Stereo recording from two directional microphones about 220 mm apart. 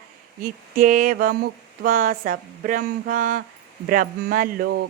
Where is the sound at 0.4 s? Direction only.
40° right (ahead or behind).